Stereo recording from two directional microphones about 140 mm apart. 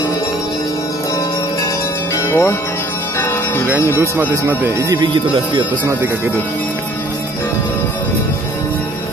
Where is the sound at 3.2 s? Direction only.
15° left (ahead or behind).